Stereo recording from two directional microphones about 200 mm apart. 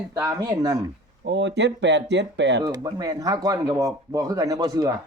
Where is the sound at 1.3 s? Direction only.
65° right (ahead or behind).